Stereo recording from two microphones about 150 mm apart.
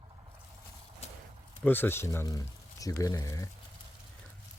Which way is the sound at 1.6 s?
15° left (ahead or behind).